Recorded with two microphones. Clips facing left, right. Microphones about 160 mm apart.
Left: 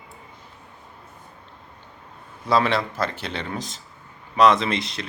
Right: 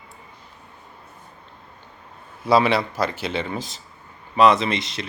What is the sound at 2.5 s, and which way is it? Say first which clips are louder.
Speech: right 3 dB; 10° right (ahead or behind).